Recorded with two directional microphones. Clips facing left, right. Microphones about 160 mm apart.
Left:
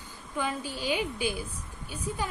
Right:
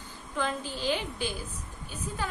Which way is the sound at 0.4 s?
10° left (ahead or behind).